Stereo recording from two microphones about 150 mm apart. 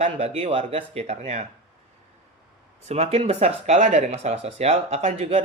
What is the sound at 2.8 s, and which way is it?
Speech, 45° right (ahead or behind).